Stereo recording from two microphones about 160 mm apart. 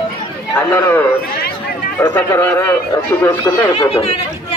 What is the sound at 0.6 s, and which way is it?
Speech, 15° left (ahead or behind).